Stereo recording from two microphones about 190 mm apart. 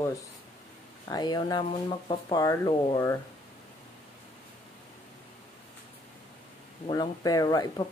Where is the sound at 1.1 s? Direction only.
20° left (ahead or behind).